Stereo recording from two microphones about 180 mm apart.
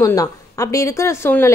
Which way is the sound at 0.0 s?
20° left (ahead or behind).